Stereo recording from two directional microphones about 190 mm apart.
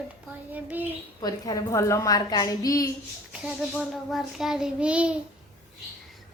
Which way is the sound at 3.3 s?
5° right (ahead or behind).